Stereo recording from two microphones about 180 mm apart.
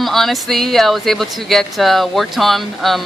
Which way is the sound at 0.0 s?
Centre (ahead or behind).